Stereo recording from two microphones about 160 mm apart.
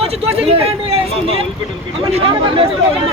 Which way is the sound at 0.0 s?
40° right (ahead or behind).